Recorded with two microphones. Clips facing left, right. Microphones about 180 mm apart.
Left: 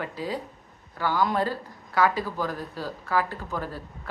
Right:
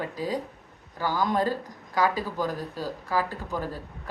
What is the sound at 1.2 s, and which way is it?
Speech, 15° right (ahead or behind).